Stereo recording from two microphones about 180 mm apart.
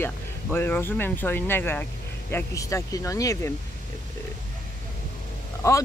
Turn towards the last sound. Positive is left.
turn(degrees=15)  # may be behind; listen again after turning